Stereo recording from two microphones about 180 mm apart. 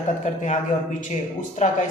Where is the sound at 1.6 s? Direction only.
40° left (ahead or behind).